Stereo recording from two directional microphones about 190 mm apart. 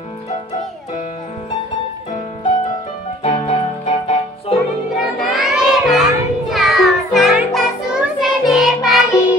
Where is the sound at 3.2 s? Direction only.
30° left (ahead or behind).